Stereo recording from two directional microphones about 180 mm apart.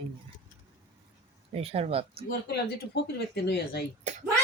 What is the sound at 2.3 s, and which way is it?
Speech, 65° left (ahead or behind).